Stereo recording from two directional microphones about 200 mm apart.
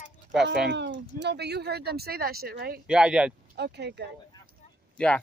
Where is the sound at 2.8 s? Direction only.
5° right (ahead or behind).